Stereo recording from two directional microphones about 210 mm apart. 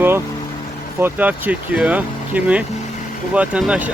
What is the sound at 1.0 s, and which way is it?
Speech, 10° right (ahead or behind).